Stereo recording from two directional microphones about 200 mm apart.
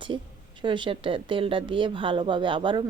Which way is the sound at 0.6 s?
25° right (ahead or behind).